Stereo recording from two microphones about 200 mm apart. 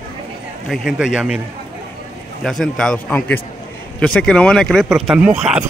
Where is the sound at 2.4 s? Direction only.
Centre (ahead or behind).